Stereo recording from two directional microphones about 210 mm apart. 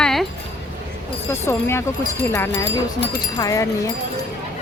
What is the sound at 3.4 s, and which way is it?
Speech, 15° left (ahead or behind).